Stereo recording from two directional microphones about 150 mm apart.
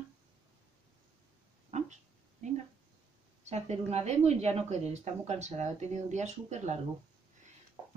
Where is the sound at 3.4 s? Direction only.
45° right (ahead or behind).